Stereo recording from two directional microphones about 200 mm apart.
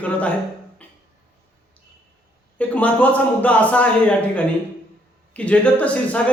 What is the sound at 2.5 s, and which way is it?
A man's voice, 5° left (ahead or behind).